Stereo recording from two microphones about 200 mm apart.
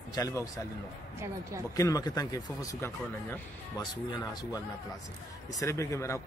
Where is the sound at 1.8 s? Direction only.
20° left (ahead or behind).